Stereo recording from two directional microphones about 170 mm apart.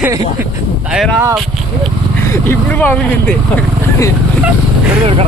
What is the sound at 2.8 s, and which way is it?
Speech, 10° left (ahead or behind).